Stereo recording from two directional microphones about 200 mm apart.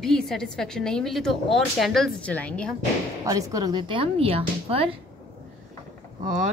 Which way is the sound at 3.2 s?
15° right (ahead or behind).